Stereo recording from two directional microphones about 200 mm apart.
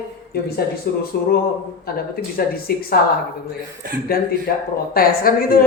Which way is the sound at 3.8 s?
45° right (ahead or behind).